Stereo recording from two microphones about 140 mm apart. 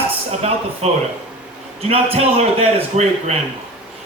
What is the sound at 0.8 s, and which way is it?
A man's voice, 50° right (ahead or behind).